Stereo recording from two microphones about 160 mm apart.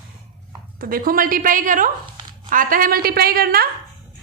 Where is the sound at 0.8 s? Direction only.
65° right (ahead or behind).